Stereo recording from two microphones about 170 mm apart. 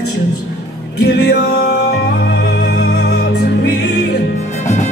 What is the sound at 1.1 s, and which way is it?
Music, 75° left (ahead or behind).